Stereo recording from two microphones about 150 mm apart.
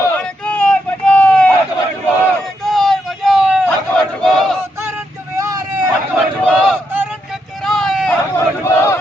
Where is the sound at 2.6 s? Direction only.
Centre (ahead or behind).